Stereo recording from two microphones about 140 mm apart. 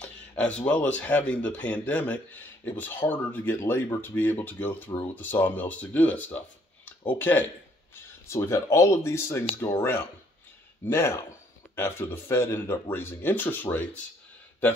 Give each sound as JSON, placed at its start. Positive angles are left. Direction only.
{"t": 0.0, "sound": "speech", "side_deg": 10}